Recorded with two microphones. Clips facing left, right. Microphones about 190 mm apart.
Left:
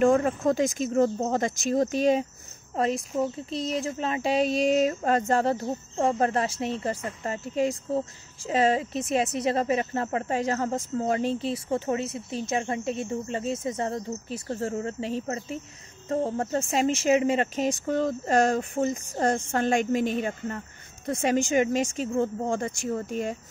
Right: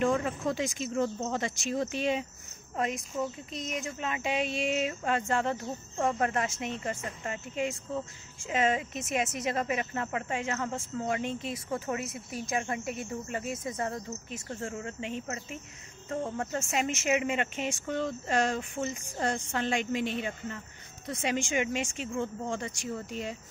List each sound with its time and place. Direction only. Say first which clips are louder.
0.0 s speech: left 7 dB; 45° left (ahead or behind)